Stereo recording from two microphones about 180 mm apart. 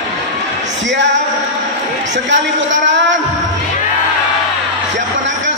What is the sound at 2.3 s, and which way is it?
Speech, 90° right.